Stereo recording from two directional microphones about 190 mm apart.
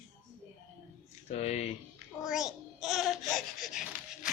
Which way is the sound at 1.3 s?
35° left (ahead or behind).